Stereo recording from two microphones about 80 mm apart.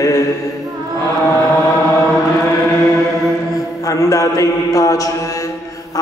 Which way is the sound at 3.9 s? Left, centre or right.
Left.